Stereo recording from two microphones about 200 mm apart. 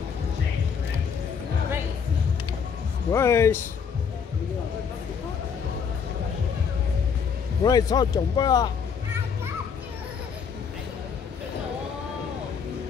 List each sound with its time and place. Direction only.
3.1 s speech: 15° left (ahead or behind)
7.6 s a man's voice: 20° left (ahead or behind)